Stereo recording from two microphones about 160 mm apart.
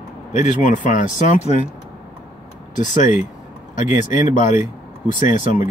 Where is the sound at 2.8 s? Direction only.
50° left (ahead or behind).